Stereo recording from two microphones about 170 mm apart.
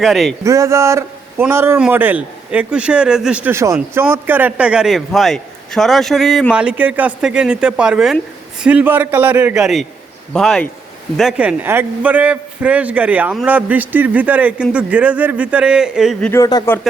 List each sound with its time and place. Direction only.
0.0 s a man's voice: centre (ahead or behind)
0.4 s a man's voice: 15° right (ahead or behind)
16.3 s a man's voice: 20° left (ahead or behind)